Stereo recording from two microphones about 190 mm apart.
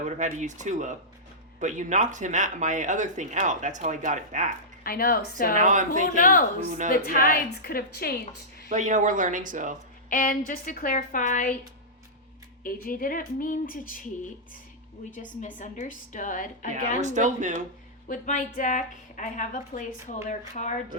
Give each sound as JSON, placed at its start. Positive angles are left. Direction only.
{"t": 0.0, "sound": "speech", "side_deg": -40}
{"t": 4.8, "sound": "a woman's voice", "side_deg": 50}
{"t": 5.5, "sound": "speech", "side_deg": -40}
{"t": 6.1, "sound": "a woman's voice", "side_deg": 45}
{"t": 8.7, "sound": "speech", "side_deg": -40}
{"t": 10.1, "sound": "a woman's voice", "side_deg": 45}
{"t": 12.6, "sound": "a woman's voice", "side_deg": 50}
{"t": 15.1, "sound": "a woman's voice", "side_deg": 40}
{"t": 17.0, "sound": "speech", "side_deg": -40}
{"t": 18.1, "sound": "a woman's voice", "side_deg": 45}